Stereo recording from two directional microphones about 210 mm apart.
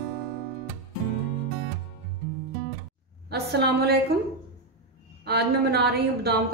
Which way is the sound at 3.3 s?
50° right (ahead or behind).